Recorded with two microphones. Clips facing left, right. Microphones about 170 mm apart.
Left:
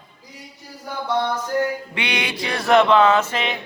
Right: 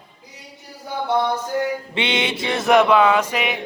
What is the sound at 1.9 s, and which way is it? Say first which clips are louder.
Speech: right 4 dB; 25° right (ahead or behind).